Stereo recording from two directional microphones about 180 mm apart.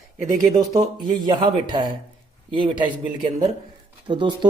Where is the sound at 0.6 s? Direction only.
25° right (ahead or behind).